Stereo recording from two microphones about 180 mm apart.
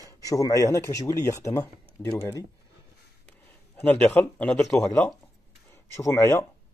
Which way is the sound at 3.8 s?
10° left (ahead or behind).